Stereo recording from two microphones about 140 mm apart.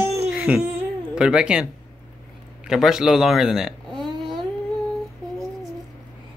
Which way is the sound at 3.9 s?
30° right (ahead or behind).